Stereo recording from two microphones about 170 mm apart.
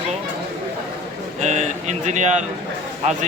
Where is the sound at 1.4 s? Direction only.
45° right (ahead or behind).